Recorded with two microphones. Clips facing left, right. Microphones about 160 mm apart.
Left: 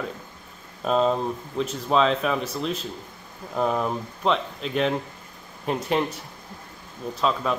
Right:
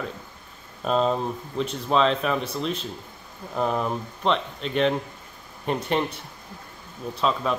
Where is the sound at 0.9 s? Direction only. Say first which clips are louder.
Left 1 dB; centre (ahead or behind).